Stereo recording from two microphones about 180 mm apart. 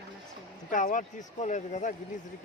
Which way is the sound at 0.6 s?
45° left (ahead or behind).